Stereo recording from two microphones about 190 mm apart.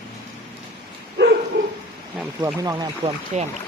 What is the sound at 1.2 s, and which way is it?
Bow-wow, 65° right (ahead or behind).